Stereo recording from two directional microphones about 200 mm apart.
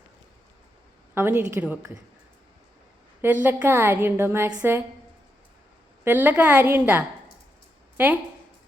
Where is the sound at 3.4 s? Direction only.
10° right (ahead or behind).